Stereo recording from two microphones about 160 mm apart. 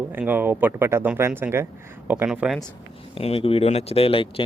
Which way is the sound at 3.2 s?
35° left (ahead or behind).